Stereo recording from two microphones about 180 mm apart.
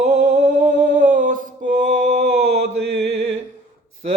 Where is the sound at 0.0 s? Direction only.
45° right (ahead or behind).